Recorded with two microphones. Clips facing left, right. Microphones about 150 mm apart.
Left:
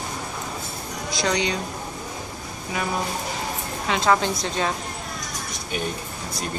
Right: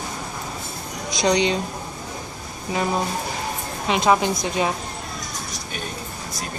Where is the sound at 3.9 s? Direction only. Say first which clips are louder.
Right 2 dB; 15° right (ahead or behind).